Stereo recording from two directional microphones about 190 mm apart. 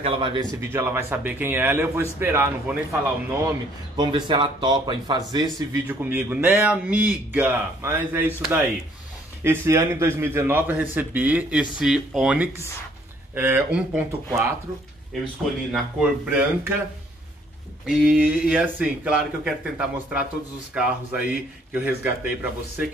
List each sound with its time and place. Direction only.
0.0 s a man's voice: 25° right (ahead or behind)
5.9 s a man's voice: 10° right (ahead or behind)
15.7 s a man's voice: 5° right (ahead or behind)
17.8 s a man's voice: 5° right (ahead or behind)